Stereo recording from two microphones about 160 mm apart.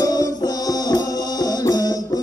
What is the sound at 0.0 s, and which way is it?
Music, 20° left (ahead or behind).